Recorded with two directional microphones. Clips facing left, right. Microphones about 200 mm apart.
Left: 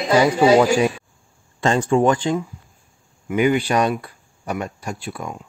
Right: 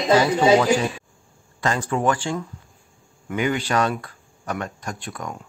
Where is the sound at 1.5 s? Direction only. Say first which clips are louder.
Left 6 dB; 25° left (ahead or behind); by 5.4 s 10° left (ahead or behind).